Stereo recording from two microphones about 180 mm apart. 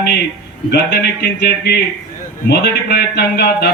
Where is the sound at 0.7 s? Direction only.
65° left (ahead or behind).